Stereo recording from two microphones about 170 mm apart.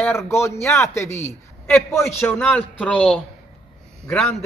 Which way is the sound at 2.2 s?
5° left (ahead or behind).